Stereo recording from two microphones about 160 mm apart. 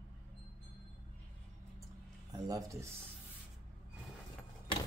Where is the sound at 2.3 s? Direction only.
20° right (ahead or behind).